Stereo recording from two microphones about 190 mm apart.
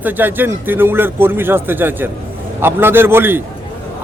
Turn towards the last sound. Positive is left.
turn(degrees=-10)  # may be behind; listen again after turning